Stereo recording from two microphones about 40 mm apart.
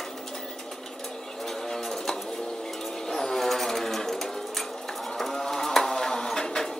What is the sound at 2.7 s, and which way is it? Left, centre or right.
Sewing machine, centre.